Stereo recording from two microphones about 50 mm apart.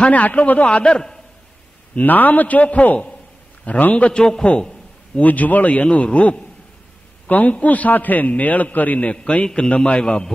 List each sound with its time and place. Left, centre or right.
0.0 s a man's voice: left
2.0 s a man's voice: left
4.2 s a man's voice: centre
4.6 s a sound: centre
5.2 s a man's voice: left
7.2 s a man's voice: left; by 10.3 s centre